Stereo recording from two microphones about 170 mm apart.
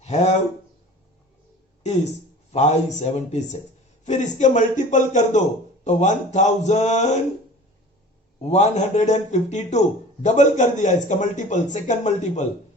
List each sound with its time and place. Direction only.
0.0 s speech: 40° left (ahead or behind)
2.5 s a man's voice: 40° left (ahead or behind)
8.4 s a man's voice: 40° left (ahead or behind)